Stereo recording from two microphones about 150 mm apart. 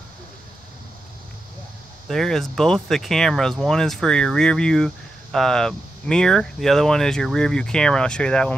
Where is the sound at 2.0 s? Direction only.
Centre (ahead or behind).